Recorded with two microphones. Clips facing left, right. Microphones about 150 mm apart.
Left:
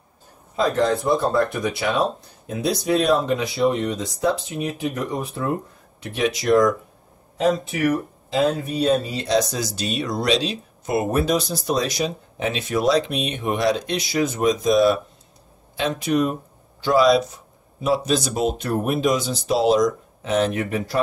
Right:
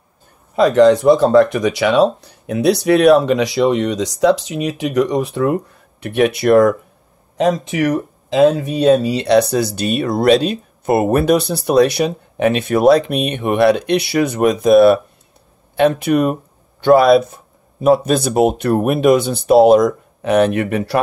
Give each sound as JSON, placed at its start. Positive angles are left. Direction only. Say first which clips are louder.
{"t": 0.6, "sound": "speech", "louder": "right 10 dB", "side_deg": -85}
{"t": 7.3, "sound": "speech", "louder": "right 5 dB", "side_deg": -90}